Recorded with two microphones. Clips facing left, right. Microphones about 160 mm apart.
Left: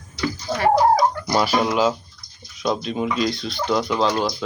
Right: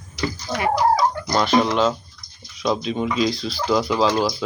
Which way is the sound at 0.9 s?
10° left (ahead or behind).